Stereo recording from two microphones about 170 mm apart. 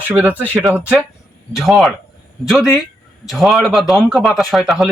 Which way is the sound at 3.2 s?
Centre (ahead or behind).